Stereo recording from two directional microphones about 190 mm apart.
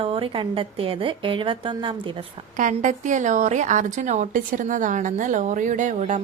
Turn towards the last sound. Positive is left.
turn(degrees=-40)  # may be behind; listen again after turning